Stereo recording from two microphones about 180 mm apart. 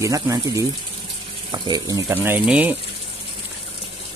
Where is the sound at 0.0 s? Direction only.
20° right (ahead or behind).